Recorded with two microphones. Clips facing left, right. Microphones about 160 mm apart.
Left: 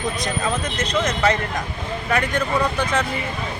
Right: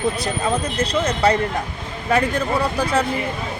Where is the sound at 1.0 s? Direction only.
35° right (ahead or behind).